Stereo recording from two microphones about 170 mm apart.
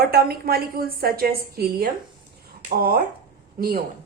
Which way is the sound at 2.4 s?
60° right (ahead or behind).